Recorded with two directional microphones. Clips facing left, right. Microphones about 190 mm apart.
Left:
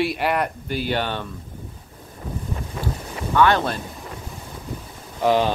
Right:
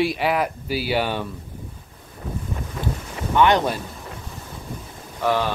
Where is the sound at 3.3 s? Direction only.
20° right (ahead or behind).